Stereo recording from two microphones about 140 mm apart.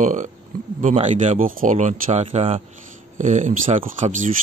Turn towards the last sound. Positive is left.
turn(degrees=-65)  # may be behind; listen again after turning